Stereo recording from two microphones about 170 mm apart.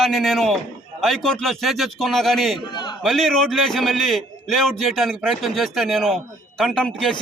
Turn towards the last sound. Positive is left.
turn(degrees=5)  # may be behind; listen again after turning